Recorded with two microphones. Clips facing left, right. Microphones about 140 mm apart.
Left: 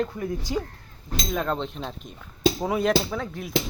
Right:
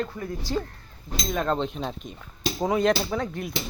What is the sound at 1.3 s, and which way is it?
Speech, centre (ahead or behind).